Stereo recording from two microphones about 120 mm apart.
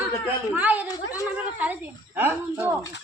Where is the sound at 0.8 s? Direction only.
30° left (ahead or behind).